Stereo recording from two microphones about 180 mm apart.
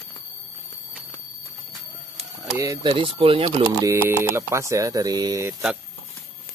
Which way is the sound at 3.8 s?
15° right (ahead or behind).